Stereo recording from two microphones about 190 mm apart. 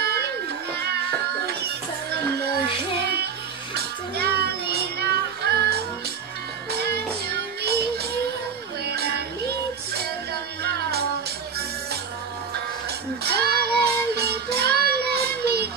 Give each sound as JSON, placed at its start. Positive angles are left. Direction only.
{"t": 0.0, "sound": "a sound", "side_deg": -60}
{"t": 1.4, "sound": "music", "side_deg": -60}
{"t": 3.7, "sound": "child singing", "side_deg": -55}
{"t": 6.7, "sound": "music", "side_deg": -60}
{"t": 8.8, "sound": "a sound", "side_deg": -60}
{"t": 10.6, "sound": "music", "side_deg": -60}
{"t": 13.2, "sound": "child singing", "side_deg": -55}